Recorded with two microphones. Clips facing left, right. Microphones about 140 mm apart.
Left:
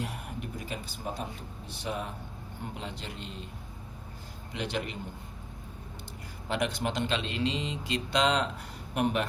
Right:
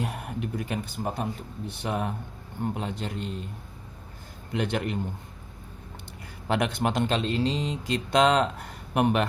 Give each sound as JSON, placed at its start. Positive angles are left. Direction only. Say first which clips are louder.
{"t": 0.0, "sound": "speech", "louder": "right 5 dB", "side_deg": -60}
{"t": 4.5, "sound": "speech", "louder": "right 6 dB", "side_deg": -50}
{"t": 6.5, "sound": "speech", "louder": "right 5 dB", "side_deg": -60}